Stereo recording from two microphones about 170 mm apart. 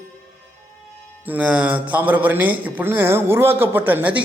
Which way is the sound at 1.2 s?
10° right (ahead or behind).